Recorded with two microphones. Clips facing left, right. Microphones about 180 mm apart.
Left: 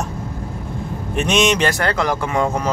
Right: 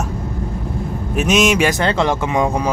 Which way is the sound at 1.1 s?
5° right (ahead or behind).